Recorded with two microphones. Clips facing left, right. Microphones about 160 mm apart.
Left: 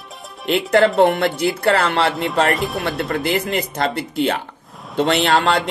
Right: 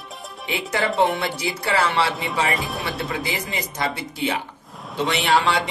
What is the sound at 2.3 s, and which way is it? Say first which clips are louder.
Speech: left 6 dB; centre (ahead or behind).